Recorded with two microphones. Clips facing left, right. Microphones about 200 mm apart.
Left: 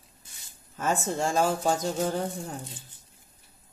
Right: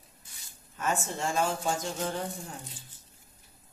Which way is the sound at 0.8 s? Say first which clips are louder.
Left 4 dB; 40° left (ahead or behind).